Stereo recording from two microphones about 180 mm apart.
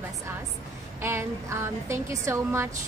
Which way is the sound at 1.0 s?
15° right (ahead or behind).